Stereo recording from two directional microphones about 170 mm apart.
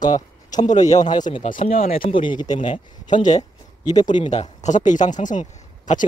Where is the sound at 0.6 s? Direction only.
45° left (ahead or behind).